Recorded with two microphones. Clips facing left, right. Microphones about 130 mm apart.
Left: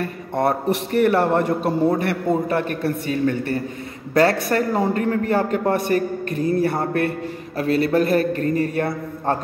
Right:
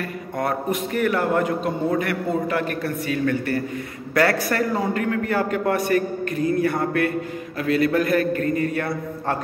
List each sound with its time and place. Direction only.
0.4 s a man's voice: 30° left (ahead or behind)
2.5 s a man's voice: 30° left (ahead or behind)